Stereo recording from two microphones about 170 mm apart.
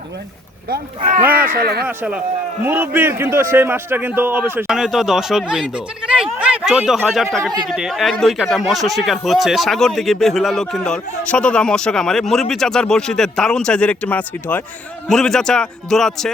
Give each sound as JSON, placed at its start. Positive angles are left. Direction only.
{"t": 1.2, "sound": "a man's voice", "side_deg": -10}
{"t": 1.5, "sound": "speech", "side_deg": -65}
{"t": 1.9, "sound": "a man's voice", "side_deg": -10}